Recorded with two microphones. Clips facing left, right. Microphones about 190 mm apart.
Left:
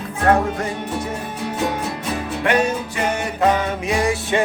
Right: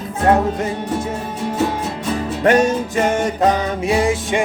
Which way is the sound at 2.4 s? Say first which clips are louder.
Right 5 dB; 45° right (ahead or behind).